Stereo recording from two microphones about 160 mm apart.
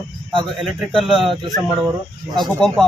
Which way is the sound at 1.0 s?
Centre (ahead or behind).